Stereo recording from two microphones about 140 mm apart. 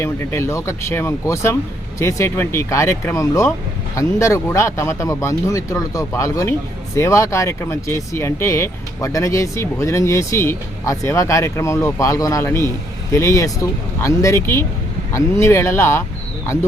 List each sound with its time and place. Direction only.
0.0 s speech: 20° left (ahead or behind)